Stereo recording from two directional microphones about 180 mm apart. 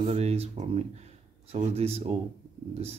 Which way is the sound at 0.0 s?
35° right (ahead or behind).